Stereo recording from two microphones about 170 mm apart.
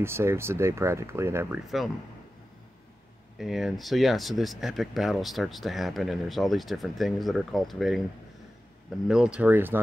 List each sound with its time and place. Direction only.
0.0 s speech: 15° right (ahead or behind)
3.3 s speech: centre (ahead or behind)
9.0 s speech: 5° right (ahead or behind)